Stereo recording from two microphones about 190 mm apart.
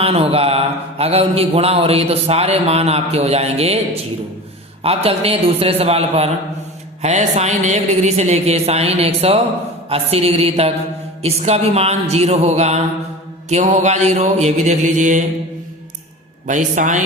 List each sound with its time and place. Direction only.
0.0 s mantra: 30° right (ahead or behind)
4.8 s mantra: 30° right (ahead or behind)
16.5 s mantra: 40° right (ahead or behind)